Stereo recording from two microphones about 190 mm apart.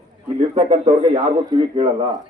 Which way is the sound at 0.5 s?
30° right (ahead or behind).